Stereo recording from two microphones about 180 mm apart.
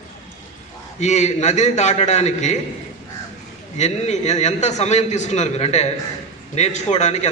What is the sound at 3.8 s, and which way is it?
A man's voice, 40° left (ahead or behind).